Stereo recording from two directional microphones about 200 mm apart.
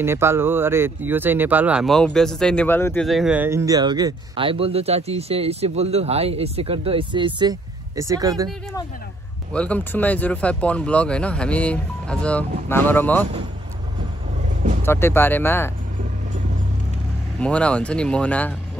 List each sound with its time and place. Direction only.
0.0 s speech: 10° right (ahead or behind); by 3.1 s 10° left (ahead or behind)
3.1 s speech: 5° right (ahead or behind)
9.5 s speech: 5° left (ahead or behind)
14.9 s speech: 10° left (ahead or behind)
17.4 s speech: 5° left (ahead or behind)